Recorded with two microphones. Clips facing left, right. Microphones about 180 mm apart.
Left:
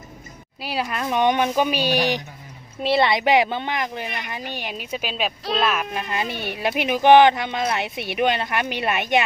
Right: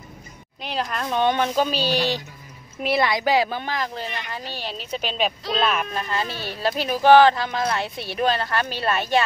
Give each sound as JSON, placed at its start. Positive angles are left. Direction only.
{"t": 0.6, "sound": "speech", "side_deg": 10}
{"t": 2.8, "sound": "speech", "side_deg": 25}
{"t": 6.3, "sound": "speech", "side_deg": 60}
{"t": 6.6, "sound": "speech", "side_deg": 20}